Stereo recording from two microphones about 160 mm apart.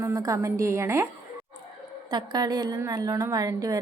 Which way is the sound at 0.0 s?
20° right (ahead or behind).